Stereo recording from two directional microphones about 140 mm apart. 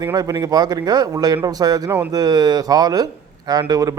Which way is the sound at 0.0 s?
25° right (ahead or behind).